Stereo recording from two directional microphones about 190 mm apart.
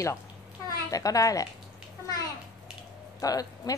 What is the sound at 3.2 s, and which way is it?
Speech, 20° left (ahead or behind).